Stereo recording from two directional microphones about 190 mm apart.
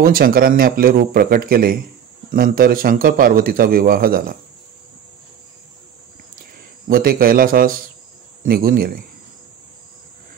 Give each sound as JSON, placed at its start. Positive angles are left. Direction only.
{"t": 0.0, "sound": "speech", "side_deg": -50}
{"t": 6.9, "sound": "speech", "side_deg": -50}